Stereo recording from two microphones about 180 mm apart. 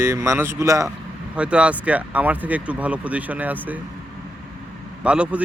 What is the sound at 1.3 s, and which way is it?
Speech, 5° right (ahead or behind).